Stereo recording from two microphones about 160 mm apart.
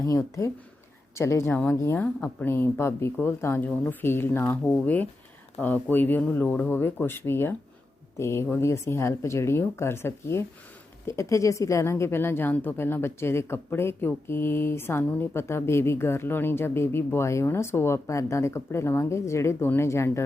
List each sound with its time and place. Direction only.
0.0 s speech: 20° left (ahead or behind)